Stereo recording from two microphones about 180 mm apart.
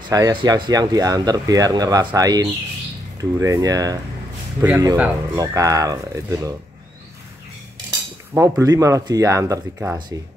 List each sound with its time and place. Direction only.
0.1 s speech: 20° right (ahead or behind)
8.4 s speech: 15° right (ahead or behind)